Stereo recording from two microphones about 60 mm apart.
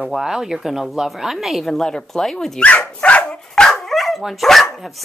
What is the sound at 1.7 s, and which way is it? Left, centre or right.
Speech, centre.